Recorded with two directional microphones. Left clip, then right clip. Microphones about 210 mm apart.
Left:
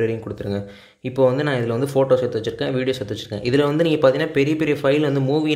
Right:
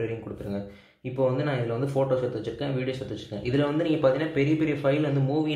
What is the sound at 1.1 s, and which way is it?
A man's voice, 50° left (ahead or behind).